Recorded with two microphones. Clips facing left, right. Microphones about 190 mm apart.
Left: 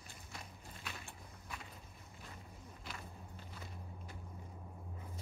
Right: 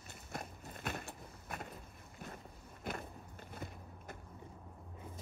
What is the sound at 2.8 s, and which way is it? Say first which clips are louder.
Biting: right 9 dB; 55° right (ahead or behind).